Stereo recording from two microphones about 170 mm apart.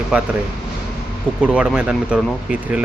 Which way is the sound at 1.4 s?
5° right (ahead or behind).